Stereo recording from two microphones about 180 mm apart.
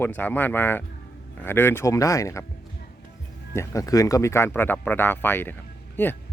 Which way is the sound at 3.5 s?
15° left (ahead or behind).